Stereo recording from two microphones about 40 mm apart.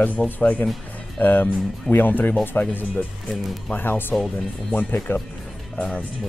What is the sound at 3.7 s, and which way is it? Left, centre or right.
Speech, left.